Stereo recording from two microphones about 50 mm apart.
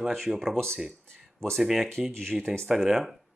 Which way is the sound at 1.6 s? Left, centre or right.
Centre.